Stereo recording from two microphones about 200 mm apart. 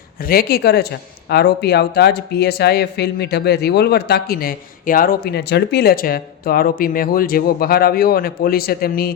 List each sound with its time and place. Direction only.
0.2 s speech: 50° left (ahead or behind)